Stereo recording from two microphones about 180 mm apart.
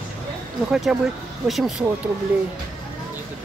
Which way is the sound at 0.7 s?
5° right (ahead or behind).